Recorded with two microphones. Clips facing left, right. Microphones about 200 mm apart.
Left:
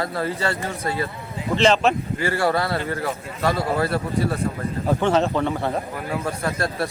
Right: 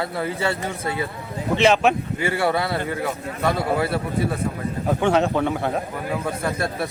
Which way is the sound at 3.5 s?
Centre (ahead or behind).